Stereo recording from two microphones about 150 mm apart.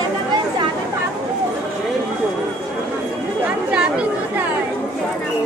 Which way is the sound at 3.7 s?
5° right (ahead or behind).